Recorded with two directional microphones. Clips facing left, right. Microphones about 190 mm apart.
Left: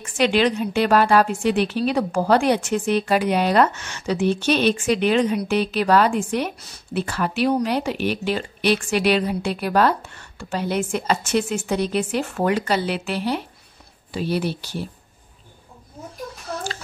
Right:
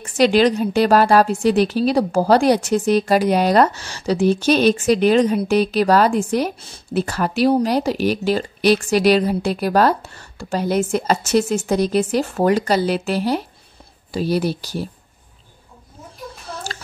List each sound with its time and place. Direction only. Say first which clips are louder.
0.0 s a woman's voice: right 4 dB; 40° right (ahead or behind)